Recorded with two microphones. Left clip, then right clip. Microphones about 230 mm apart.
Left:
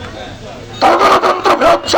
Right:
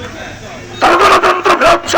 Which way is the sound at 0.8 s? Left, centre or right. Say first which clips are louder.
Right 1 dB; left.